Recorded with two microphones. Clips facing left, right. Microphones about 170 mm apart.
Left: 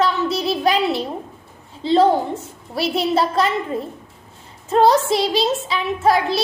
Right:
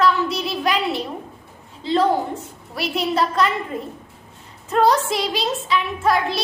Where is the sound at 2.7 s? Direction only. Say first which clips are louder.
Left 3 dB; 30° left (ahead or behind).